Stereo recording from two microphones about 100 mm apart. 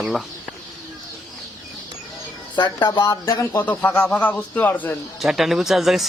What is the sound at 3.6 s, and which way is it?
Speech, 15° left (ahead or behind).